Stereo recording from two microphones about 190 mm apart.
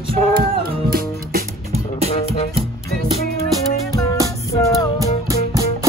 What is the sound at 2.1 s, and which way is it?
Music, 30° left (ahead or behind).